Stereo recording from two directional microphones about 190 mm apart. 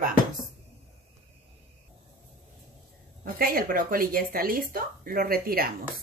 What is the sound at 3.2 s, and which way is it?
Speech, 50° right (ahead or behind).